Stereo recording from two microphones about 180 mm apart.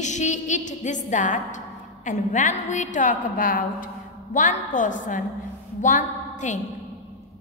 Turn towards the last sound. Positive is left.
turn(degrees=45)  # may be behind; listen again after turning